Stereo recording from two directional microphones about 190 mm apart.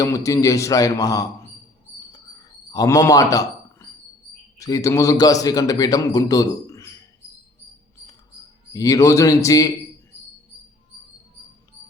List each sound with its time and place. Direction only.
0.0 s a man's voice: 15° left (ahead or behind)
2.7 s a man's voice: 15° left (ahead or behind)
8.7 s a man's voice: 20° left (ahead or behind)